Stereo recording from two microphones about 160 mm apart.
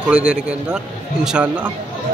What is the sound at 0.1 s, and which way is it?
A man's voice, 5° right (ahead or behind).